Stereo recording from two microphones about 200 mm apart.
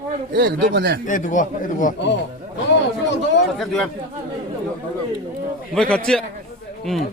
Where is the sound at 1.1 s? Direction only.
40° left (ahead or behind).